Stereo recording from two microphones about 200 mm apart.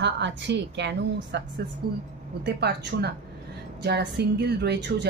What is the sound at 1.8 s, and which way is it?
Speech, 50° right (ahead or behind).